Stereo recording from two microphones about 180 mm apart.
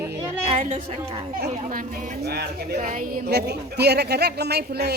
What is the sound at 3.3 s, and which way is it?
A woman's voice, 65° right (ahead or behind).